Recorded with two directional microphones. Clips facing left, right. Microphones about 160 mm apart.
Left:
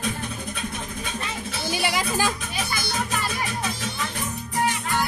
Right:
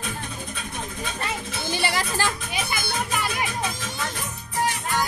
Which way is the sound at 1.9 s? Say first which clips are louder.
Left 1 dB; 15° left (ahead or behind).